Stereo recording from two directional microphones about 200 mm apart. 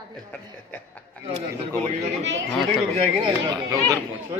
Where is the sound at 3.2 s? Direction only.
20° right (ahead or behind).